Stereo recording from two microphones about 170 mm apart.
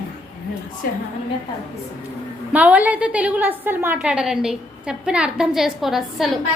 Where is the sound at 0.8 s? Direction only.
55° left (ahead or behind).